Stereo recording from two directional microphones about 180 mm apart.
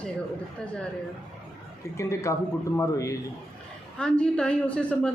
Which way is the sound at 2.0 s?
15° left (ahead or behind).